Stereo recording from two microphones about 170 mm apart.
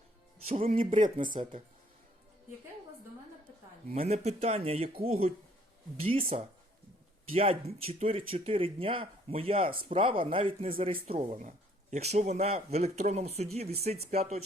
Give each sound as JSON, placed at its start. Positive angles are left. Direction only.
{"t": 0.4, "sound": "speech", "side_deg": -40}
{"t": 4.1, "sound": "speech", "side_deg": -40}